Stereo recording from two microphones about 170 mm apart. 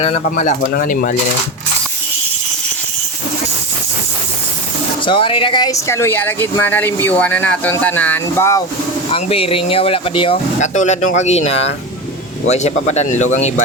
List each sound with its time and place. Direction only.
0.0 s speech: 40° left (ahead or behind)
0.7 s speech: 55° left (ahead or behind)
5.0 s speech: 30° left (ahead or behind)
9.0 s speech: 35° left (ahead or behind)
10.6 s speech: 45° left (ahead or behind)